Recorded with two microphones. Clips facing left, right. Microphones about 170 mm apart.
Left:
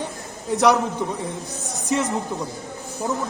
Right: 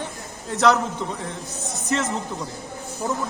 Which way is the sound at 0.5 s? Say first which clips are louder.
Left 1 dB; 15° left (ahead or behind).